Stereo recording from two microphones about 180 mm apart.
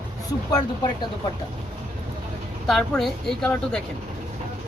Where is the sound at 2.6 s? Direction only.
Centre (ahead or behind).